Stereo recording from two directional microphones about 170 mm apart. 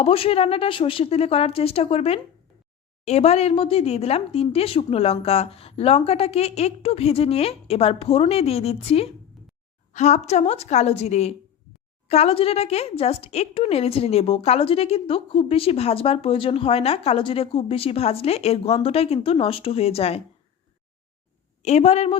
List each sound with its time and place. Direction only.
0.0 s speech: 35° left (ahead or behind)
21.6 s speech: 40° left (ahead or behind)